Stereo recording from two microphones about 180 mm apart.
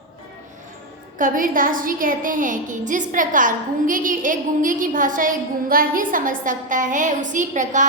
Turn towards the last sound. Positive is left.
turn(degrees=-45)  # may be behind; listen again after turning